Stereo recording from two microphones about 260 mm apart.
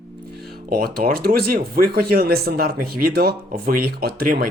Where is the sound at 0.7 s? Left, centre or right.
Right.